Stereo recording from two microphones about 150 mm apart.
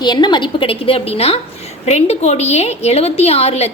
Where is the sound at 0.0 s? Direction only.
30° left (ahead or behind).